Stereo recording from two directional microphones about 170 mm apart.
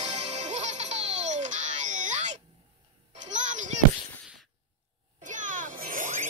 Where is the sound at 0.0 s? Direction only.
40° right (ahead or behind).